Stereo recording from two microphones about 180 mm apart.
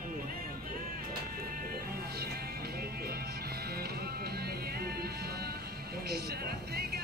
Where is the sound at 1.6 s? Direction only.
60° right (ahead or behind).